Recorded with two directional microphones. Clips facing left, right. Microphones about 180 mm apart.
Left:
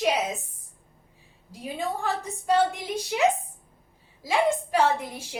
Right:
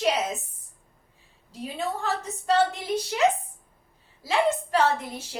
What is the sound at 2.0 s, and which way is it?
A woman's voice, 10° left (ahead or behind).